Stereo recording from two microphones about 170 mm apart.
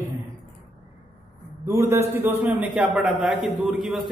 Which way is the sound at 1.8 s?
15° right (ahead or behind).